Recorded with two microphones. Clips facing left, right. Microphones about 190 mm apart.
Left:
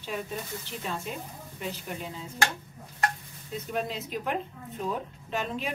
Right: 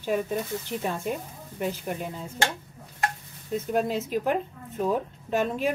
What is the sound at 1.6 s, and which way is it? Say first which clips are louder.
Speech: right 6 dB; 50° right (ahead or behind).